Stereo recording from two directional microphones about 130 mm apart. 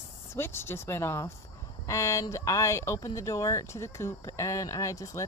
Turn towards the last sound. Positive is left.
turn(degrees=25)  # may be behind; listen again after turning